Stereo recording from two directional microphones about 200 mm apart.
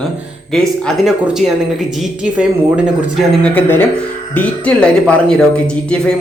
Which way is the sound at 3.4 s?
10° left (ahead or behind).